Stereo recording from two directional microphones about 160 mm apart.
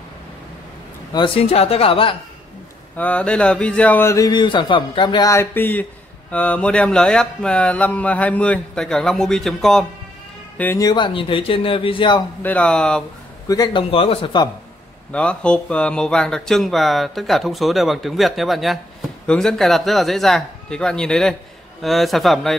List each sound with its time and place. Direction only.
1.1 s speech: 35° left (ahead or behind)
3.0 s speech: 10° left (ahead or behind)
10.6 s speech: 15° left (ahead or behind)
10.9 s speech: 30° left (ahead or behind)
12.4 s speech: 10° left (ahead or behind)
13.5 s a man's voice: 20° left (ahead or behind)
13.8 s speech: 35° left (ahead or behind)
15.1 s speech: 5° left (ahead or behind)